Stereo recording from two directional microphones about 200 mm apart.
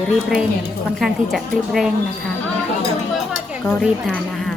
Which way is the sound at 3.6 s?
5° left (ahead or behind).